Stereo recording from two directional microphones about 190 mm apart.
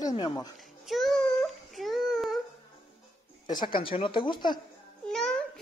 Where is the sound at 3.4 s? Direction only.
20° left (ahead or behind).